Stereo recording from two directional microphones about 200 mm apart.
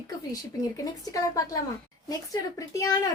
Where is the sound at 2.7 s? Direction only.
15° left (ahead or behind).